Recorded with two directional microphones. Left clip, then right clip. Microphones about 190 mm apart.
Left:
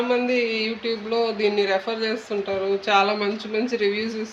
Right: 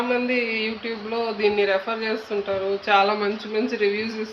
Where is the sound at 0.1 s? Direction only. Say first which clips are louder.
Left 1 dB; 55° left (ahead or behind).